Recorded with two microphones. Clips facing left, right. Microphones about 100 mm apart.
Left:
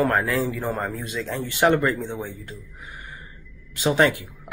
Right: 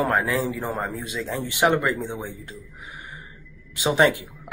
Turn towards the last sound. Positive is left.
turn(degrees=-15)  # may be behind; listen again after turning